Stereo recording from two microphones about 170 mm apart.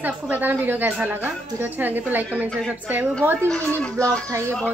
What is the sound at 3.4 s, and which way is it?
Speech, 5° left (ahead or behind).